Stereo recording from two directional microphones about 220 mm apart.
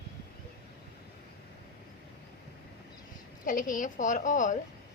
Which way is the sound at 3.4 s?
35° left (ahead or behind).